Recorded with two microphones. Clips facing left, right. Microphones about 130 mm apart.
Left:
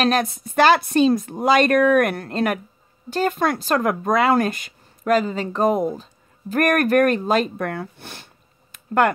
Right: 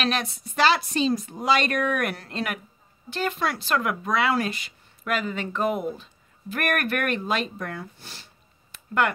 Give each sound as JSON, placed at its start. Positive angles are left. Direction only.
{"t": 0.0, "sound": "speech", "side_deg": 45}
{"t": 7.5, "sound": "speech", "side_deg": 60}
{"t": 8.7, "sound": "a sound", "side_deg": 45}